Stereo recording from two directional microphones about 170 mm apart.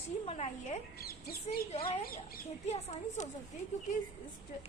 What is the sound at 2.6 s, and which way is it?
Speech, 40° left (ahead or behind).